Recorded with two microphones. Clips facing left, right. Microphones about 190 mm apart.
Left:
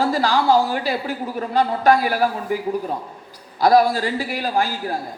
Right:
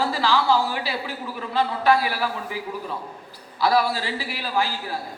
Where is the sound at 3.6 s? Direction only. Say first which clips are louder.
Left 6 dB; 45° left (ahead or behind).